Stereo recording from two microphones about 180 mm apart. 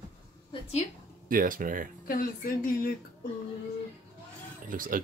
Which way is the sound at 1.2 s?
50° right (ahead or behind).